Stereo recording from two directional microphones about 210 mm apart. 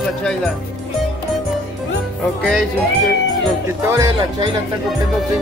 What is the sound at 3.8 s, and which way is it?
Speech, 15° right (ahead or behind).